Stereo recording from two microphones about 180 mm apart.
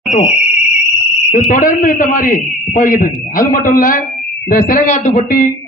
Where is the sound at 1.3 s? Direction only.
50° left (ahead or behind).